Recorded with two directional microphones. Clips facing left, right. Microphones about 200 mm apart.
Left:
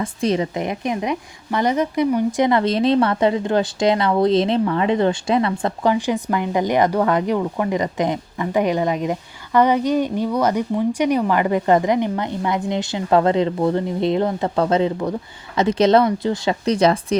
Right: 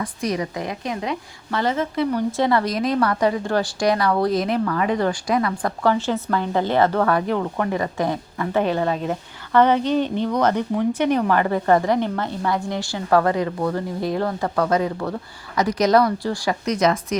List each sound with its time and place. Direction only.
0.0 s a woman's voice: 25° left (ahead or behind)